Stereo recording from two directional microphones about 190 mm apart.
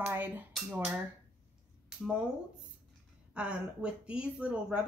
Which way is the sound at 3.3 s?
5° right (ahead or behind).